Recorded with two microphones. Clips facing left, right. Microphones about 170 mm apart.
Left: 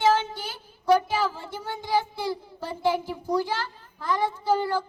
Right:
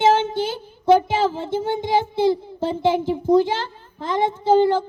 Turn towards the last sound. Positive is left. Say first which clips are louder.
# right 8 dB
turn(degrees=-25)  # may be behind; listen again after turning